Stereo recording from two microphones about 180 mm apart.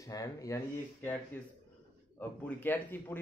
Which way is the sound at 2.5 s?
10° left (ahead or behind).